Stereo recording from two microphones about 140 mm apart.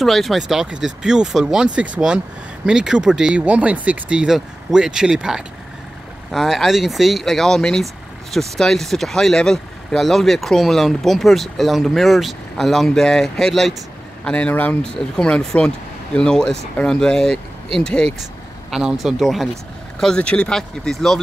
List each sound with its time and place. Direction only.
0.0 s speech: centre (ahead or behind)